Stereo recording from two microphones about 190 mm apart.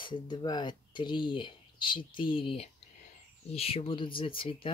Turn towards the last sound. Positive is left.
turn(degrees=30)  # may be behind; listen again after turning